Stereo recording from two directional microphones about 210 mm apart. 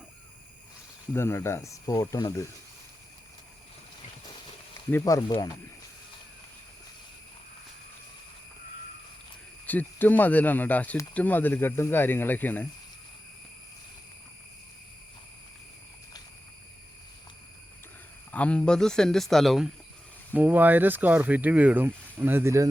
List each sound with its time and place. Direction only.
1.1 s speech: 10° left (ahead or behind)
4.9 s speech: 15° left (ahead or behind)
9.6 s speech: 10° left (ahead or behind)
18.3 s speech: 5° left (ahead or behind); by 22.7 s 15° right (ahead or behind)